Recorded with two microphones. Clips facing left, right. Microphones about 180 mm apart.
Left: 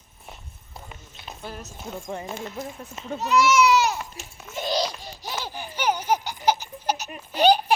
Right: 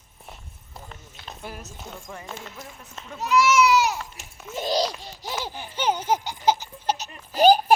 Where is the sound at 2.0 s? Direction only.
25° left (ahead or behind).